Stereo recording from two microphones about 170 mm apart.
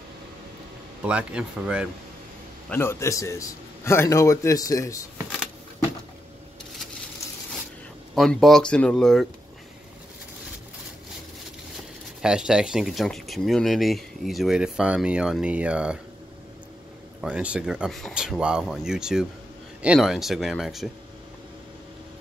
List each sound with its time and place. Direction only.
1.0 s speech: 5° right (ahead or behind)
2.7 s a man's voice: 15° left (ahead or behind)
8.1 s speech: centre (ahead or behind)
12.2 s speech: 5° right (ahead or behind)
17.2 s speech: 5° right (ahead or behind)